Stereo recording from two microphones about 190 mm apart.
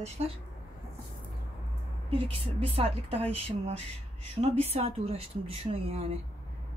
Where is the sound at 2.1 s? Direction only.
30° right (ahead or behind).